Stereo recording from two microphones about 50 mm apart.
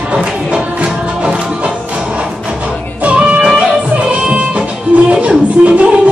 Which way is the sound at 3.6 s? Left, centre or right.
Right.